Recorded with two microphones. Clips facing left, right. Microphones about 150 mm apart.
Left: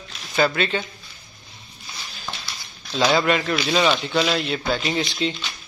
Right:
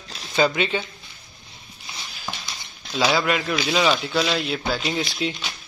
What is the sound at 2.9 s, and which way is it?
Speech, 5° right (ahead or behind).